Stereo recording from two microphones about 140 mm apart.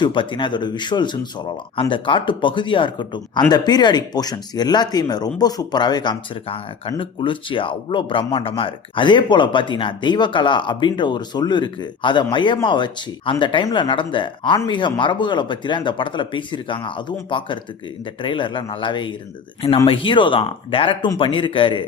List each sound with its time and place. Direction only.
0.0 s speech: 35° left (ahead or behind)